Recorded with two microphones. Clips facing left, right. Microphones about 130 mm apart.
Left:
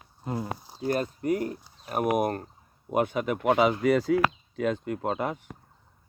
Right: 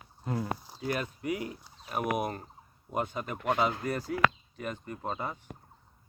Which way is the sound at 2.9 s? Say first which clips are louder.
Left 8 dB; 70° left (ahead or behind).